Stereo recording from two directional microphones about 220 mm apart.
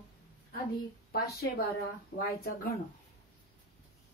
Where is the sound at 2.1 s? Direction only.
45° left (ahead or behind).